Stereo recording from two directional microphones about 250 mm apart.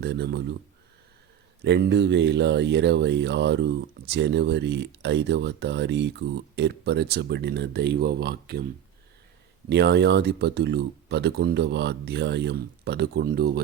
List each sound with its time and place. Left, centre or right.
0.0 s speech: right
1.6 s speech: right
9.6 s speech: right